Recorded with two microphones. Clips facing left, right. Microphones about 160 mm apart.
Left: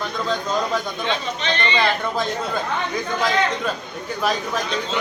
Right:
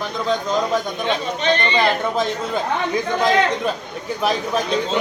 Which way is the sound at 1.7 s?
20° right (ahead or behind).